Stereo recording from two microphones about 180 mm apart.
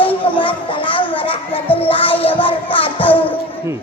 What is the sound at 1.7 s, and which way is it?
Music, 30° left (ahead or behind).